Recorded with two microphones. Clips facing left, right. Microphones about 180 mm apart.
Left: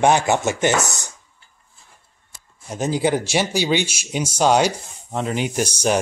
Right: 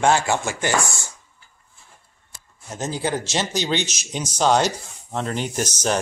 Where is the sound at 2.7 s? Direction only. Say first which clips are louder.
Left 5 dB; 10° left (ahead or behind).